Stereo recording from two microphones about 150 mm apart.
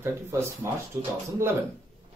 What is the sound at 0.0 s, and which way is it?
Speech, 15° right (ahead or behind).